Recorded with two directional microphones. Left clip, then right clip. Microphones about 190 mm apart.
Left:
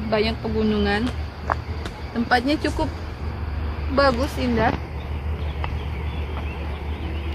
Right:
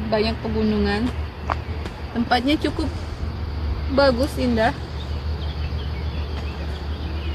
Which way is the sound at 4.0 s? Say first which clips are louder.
Right 1 dB; 55° right (ahead or behind).